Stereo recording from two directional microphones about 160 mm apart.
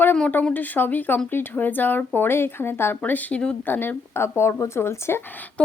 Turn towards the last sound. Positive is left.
turn(degrees=10)  # may be behind; listen again after turning